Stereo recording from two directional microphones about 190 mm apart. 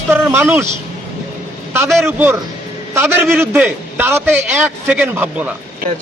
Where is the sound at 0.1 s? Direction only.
10° right (ahead or behind).